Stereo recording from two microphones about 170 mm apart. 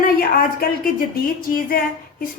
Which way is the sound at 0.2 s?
60° left (ahead or behind).